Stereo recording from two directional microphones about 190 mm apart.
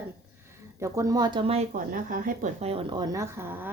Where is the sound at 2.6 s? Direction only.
25° right (ahead or behind); by 3.6 s 10° right (ahead or behind).